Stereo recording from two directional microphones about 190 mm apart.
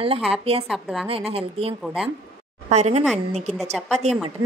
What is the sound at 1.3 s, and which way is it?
A woman's voice, 30° right (ahead or behind).